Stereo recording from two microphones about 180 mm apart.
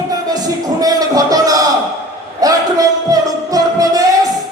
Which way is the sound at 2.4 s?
20° right (ahead or behind).